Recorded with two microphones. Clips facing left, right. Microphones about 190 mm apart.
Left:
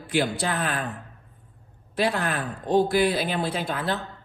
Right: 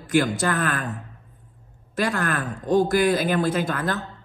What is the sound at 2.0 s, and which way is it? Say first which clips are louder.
A woman's voice: right 1 dB; 45° right (ahead or behind).